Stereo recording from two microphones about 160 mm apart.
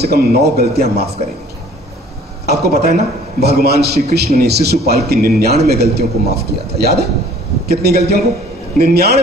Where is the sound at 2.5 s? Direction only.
45° right (ahead or behind).